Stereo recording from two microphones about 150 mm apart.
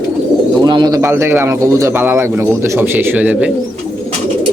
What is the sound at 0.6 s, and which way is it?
Speech, 25° right (ahead or behind).